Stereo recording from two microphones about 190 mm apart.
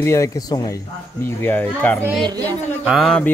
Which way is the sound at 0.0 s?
15° left (ahead or behind).